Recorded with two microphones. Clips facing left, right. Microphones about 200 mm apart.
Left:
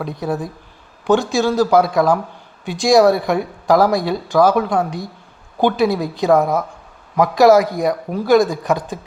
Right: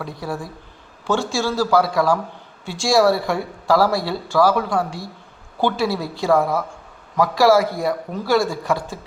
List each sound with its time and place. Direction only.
0.0 s speech: 20° left (ahead or behind)